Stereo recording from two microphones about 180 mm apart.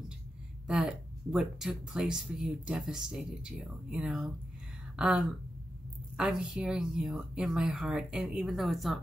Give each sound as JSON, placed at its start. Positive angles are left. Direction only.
{"t": 0.7, "sound": "speech", "side_deg": -5}